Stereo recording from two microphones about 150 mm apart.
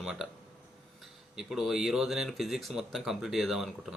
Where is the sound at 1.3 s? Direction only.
Centre (ahead or behind).